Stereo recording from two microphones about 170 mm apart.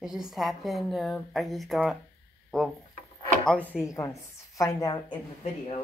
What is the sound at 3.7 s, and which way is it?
Speech, 5° right (ahead or behind).